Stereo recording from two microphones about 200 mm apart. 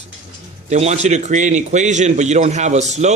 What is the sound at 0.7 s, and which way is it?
A man's voice, 35° right (ahead or behind).